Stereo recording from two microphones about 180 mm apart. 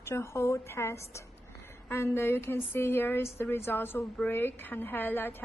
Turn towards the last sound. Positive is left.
turn(degrees=10)  # may be behind; listen again after turning